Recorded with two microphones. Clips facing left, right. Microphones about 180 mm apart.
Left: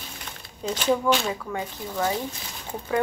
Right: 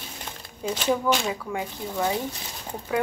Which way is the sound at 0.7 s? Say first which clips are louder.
Left 1 dB; 10° right (ahead or behind).